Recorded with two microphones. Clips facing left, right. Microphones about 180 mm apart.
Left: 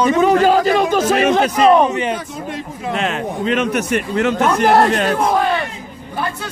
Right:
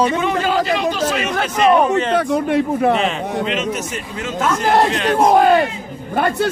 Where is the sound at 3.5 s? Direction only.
60° left (ahead or behind).